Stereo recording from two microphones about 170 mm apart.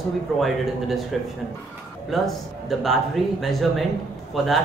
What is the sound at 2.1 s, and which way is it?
Speech, centre (ahead or behind).